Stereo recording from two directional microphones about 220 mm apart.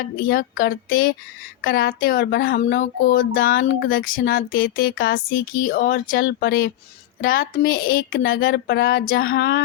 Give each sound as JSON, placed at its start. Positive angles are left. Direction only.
{"t": 0.0, "sound": "speech", "side_deg": 40}